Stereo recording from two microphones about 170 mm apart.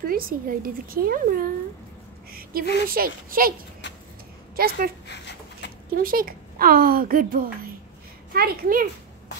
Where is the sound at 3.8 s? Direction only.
90° left.